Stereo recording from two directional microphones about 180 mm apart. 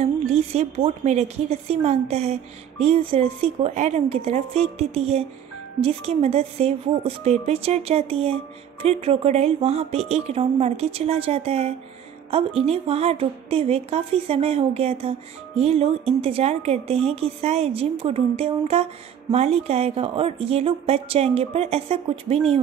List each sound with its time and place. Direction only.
0.0 s a woman's voice: 35° right (ahead or behind)